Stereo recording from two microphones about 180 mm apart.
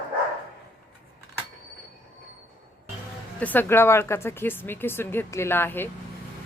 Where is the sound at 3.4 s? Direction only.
10° left (ahead or behind).